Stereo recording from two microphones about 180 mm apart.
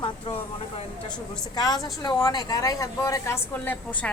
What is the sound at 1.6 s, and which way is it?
Speech, 20° left (ahead or behind).